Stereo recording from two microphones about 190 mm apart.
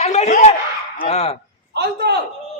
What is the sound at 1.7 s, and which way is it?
Speech, 60° right (ahead or behind).